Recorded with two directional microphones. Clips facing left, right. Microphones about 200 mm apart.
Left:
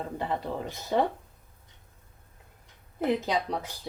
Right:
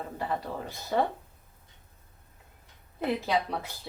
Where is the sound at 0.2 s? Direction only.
20° left (ahead or behind).